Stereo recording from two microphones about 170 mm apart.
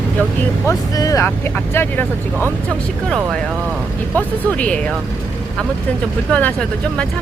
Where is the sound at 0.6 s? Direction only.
20° left (ahead or behind).